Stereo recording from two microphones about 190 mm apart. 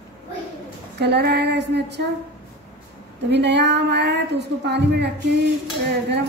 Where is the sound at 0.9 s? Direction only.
60° right (ahead or behind).